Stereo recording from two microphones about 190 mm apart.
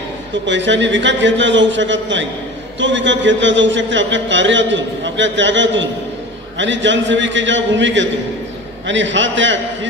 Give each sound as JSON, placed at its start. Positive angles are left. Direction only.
{"t": 0.5, "sound": "a man's voice", "side_deg": -70}